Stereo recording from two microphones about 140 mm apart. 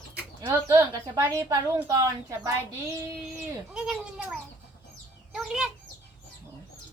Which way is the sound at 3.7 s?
5° right (ahead or behind).